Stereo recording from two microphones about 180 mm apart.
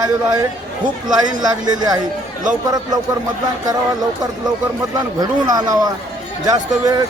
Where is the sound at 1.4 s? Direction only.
20° right (ahead or behind).